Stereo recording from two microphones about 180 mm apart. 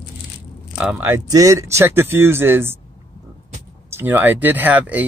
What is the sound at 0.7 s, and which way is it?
Speech, 5° right (ahead or behind).